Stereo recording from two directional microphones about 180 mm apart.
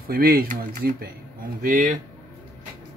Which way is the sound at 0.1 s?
55° right (ahead or behind).